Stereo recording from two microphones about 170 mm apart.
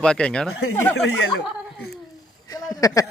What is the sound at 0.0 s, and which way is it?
Speech, 5° left (ahead or behind).